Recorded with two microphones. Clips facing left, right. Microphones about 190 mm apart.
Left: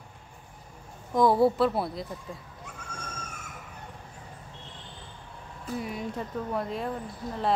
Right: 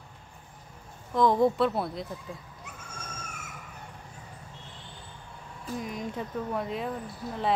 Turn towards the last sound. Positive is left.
turn(degrees=0)  # may be behind; listen again after turning